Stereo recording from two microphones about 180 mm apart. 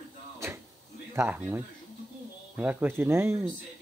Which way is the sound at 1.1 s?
10° right (ahead or behind).